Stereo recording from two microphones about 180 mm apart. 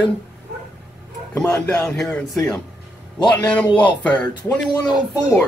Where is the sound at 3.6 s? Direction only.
25° left (ahead or behind).